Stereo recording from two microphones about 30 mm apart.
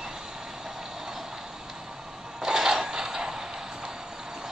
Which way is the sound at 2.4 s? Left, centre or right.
Centre.